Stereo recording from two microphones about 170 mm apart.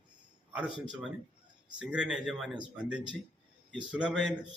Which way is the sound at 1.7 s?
5° right (ahead or behind).